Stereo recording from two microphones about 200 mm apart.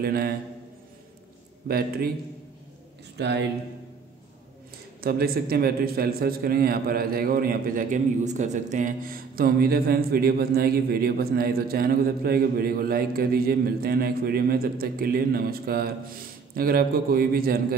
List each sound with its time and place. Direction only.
0.0 s a man's voice: 50° right (ahead or behind)
1.7 s a man's voice: 50° right (ahead or behind)
3.2 s speech: 55° right (ahead or behind)
5.0 s a man's voice: 50° right (ahead or behind)